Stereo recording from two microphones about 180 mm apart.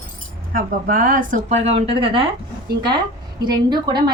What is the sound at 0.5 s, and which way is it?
Speech, 50° right (ahead or behind).